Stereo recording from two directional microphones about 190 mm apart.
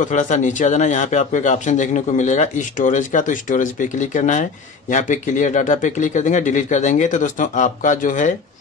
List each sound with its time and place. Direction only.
0.0 s speech: 40° left (ahead or behind)